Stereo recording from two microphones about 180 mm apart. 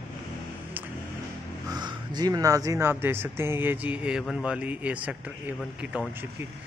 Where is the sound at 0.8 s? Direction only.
10° right (ahead or behind).